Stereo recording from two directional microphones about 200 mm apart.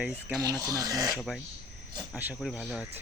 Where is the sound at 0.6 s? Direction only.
15° right (ahead or behind).